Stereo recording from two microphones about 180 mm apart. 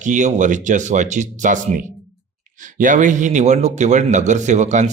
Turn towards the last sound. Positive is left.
turn(degrees=-40)  # may be behind; listen again after turning